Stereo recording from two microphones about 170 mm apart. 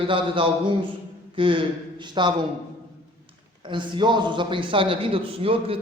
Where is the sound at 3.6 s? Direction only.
30° right (ahead or behind).